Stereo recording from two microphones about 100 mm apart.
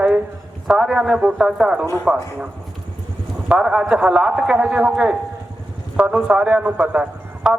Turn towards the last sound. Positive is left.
turn(degrees=-15)  # may be behind; listen again after turning